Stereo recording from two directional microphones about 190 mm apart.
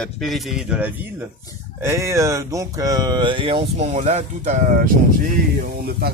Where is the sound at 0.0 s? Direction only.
Centre (ahead or behind).